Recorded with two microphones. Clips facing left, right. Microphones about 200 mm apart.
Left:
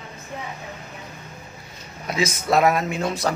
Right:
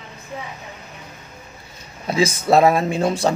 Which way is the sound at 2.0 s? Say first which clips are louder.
Right 5 dB; 30° right (ahead or behind).